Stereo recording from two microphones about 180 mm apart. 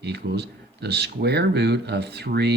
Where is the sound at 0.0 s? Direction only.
65° right (ahead or behind).